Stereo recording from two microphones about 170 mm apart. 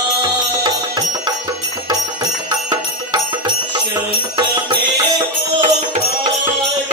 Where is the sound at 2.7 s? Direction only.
25° right (ahead or behind).